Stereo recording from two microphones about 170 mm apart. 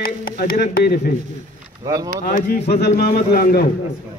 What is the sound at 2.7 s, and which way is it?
Speech, 75° left (ahead or behind).